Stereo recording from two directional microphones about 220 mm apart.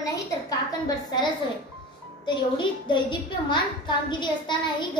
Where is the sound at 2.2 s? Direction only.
20° left (ahead or behind).